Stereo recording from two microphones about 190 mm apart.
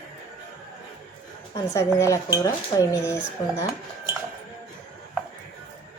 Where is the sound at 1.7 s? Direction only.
15° left (ahead or behind).